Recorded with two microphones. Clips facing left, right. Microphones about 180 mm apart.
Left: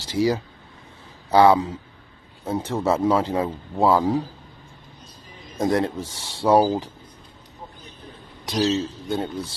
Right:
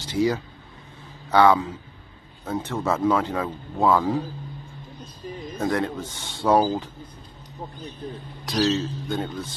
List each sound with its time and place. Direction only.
0.1 s speech: 30° left (ahead or behind)
5.6 s speech: 30° left (ahead or behind)
8.5 s speech: 20° left (ahead or behind)